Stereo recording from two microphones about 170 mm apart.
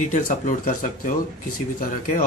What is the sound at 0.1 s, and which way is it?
Speech, 50° left (ahead or behind).